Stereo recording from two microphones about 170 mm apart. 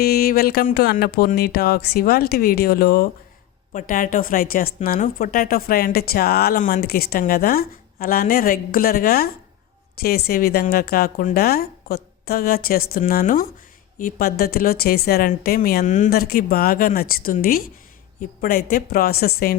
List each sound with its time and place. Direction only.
0.0 s speech: 65° left (ahead or behind); by 16.1 s 45° left (ahead or behind)
16.1 s speech: 60° left (ahead or behind)